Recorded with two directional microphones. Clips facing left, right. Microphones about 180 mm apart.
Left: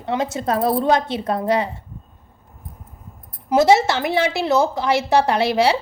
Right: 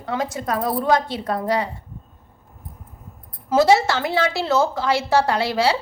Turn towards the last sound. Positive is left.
turn(degrees=20)  # may be behind; listen again after turning